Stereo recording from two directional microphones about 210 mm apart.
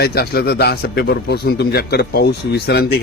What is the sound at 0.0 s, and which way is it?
A man's voice, 50° left (ahead or behind).